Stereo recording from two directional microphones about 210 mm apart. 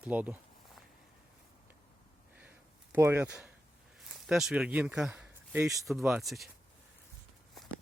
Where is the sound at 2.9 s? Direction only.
10° right (ahead or behind).